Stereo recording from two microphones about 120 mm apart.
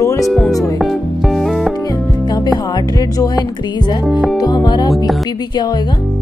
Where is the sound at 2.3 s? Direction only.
35° left (ahead or behind).